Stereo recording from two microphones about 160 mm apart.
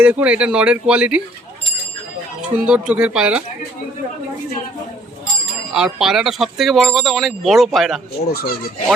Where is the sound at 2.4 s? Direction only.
5° right (ahead or behind).